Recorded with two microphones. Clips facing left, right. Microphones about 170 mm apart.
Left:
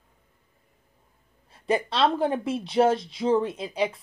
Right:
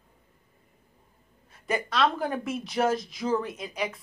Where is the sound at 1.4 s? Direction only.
30° left (ahead or behind).